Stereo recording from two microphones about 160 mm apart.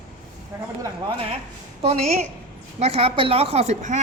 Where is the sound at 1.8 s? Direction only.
40° right (ahead or behind).